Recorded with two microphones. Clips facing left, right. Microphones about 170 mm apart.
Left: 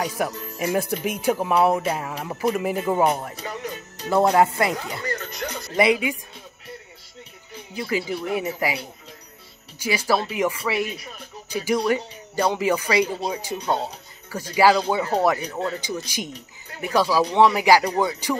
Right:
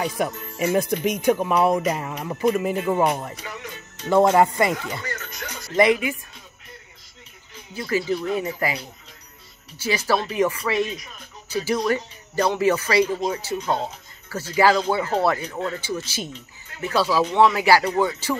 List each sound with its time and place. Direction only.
0.2 s speech: 5° left (ahead or behind)
3.3 s music: 35° left (ahead or behind)
4.1 s speech: 5° left (ahead or behind)
5.0 s music: 35° left (ahead or behind)
5.8 s speech: 15° left (ahead or behind)
7.7 s speech: 15° left (ahead or behind)